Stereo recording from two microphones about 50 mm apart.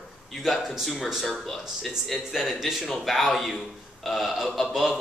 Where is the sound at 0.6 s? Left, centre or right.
Centre.